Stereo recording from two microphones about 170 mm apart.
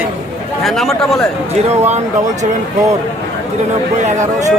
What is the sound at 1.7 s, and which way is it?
Speech, 40° right (ahead or behind).